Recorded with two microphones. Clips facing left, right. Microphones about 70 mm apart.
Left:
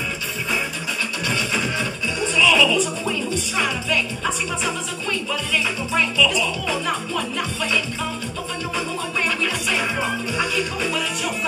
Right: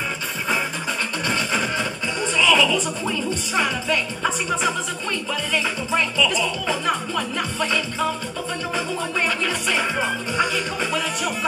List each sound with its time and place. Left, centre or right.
1.2 s music: right
6.1 s music: right
10.3 s music: right